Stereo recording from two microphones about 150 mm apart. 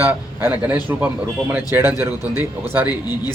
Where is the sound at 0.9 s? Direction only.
15° right (ahead or behind).